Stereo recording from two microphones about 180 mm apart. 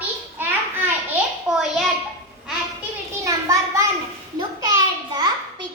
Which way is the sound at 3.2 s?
15° right (ahead or behind).